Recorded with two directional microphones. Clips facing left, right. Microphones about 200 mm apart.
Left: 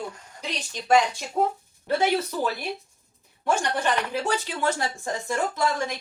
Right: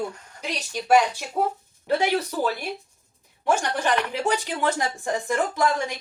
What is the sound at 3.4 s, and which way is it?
Speech, 10° right (ahead or behind).